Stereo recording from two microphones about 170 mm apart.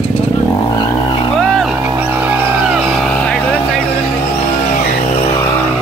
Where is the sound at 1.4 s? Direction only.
Centre (ahead or behind).